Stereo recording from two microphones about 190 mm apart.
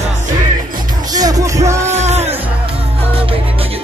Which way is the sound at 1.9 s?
35° right (ahead or behind).